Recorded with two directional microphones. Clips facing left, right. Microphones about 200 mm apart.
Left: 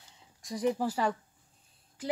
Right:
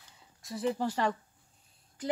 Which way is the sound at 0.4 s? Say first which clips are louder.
Left 2 dB; 15° left (ahead or behind).